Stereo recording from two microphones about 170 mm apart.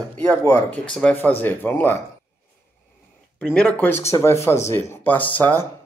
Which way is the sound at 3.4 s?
5° left (ahead or behind).